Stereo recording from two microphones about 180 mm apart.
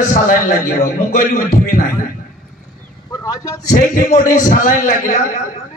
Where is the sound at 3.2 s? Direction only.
20° left (ahead or behind).